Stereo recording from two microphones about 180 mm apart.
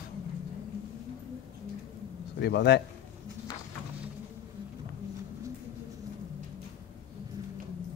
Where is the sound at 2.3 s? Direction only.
65° left (ahead or behind).